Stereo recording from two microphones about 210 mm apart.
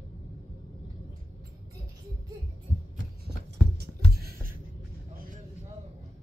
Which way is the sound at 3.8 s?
45° right (ahead or behind).